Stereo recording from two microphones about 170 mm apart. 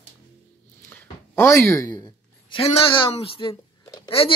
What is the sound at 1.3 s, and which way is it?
A woman's voice, 15° left (ahead or behind).